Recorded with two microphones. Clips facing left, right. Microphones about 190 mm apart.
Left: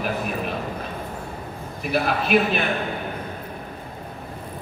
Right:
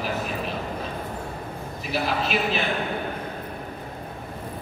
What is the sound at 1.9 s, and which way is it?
Speech, 55° left (ahead or behind).